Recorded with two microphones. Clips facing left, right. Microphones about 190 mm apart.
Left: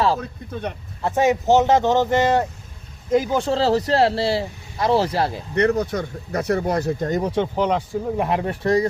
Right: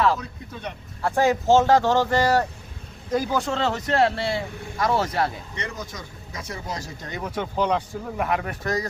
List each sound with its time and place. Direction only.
0.2 s speech: 50° left (ahead or behind)
1.0 s speech: 20° left (ahead or behind)
3.5 s speech: 35° left (ahead or behind)
5.5 s speech: 65° left (ahead or behind)
7.2 s speech: 30° left (ahead or behind)
7.5 s speech: 15° left (ahead or behind)
8.2 s speech: 25° left (ahead or behind)